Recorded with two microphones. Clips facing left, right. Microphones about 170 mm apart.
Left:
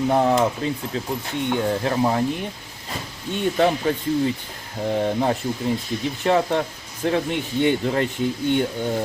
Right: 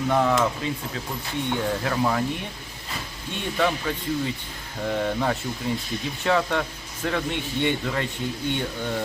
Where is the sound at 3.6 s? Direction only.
35° left (ahead or behind).